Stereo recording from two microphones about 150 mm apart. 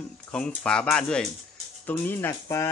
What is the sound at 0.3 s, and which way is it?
Speech, 5° left (ahead or behind).